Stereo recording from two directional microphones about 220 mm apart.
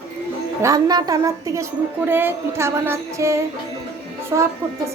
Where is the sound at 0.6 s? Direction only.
15° right (ahead or behind).